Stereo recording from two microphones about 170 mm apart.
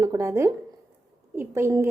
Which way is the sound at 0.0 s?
20° right (ahead or behind).